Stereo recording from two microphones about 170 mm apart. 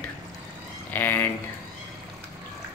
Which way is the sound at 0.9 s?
10° left (ahead or behind).